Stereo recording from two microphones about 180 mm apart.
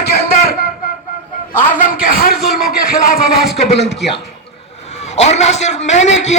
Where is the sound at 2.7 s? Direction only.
55° left (ahead or behind).